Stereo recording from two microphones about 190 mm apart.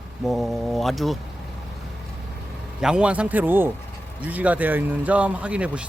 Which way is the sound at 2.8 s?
5° right (ahead or behind).